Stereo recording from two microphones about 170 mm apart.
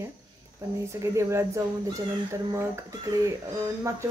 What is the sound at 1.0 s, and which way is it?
Speech, 15° right (ahead or behind).